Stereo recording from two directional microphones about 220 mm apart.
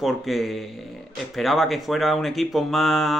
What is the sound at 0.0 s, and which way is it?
A man's voice, centre (ahead or behind).